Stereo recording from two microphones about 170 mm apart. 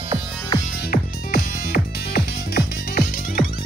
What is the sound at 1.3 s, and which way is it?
Music, 60° left (ahead or behind).